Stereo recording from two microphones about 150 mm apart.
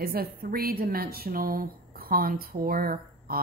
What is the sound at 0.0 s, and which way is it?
A woman's voice, 90° right.